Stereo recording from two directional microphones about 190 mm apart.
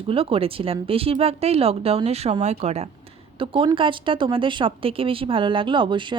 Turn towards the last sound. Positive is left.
turn(degrees=-25)  # may be behind; listen again after turning